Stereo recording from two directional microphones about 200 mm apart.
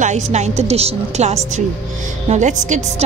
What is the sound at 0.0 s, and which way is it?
Speech, 35° right (ahead or behind).